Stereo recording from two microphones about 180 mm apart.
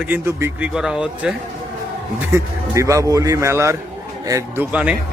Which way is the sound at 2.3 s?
15° right (ahead or behind).